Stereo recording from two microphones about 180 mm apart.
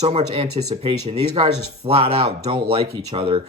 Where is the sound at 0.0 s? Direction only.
35° right (ahead or behind).